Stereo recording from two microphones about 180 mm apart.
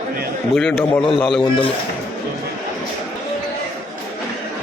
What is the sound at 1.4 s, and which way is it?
Speech, 30° left (ahead or behind).